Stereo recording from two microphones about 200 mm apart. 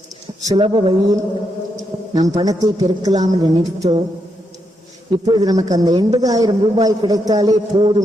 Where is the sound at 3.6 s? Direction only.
30° right (ahead or behind).